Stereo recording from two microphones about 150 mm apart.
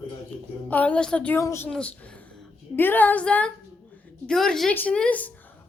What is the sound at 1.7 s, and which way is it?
A woman's voice, 10° left (ahead or behind).